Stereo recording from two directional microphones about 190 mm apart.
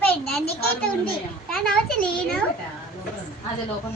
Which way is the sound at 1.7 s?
5° left (ahead or behind).